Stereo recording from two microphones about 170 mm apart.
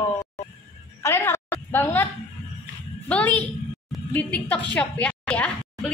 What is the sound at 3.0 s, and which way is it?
A woman's voice, 10° left (ahead or behind).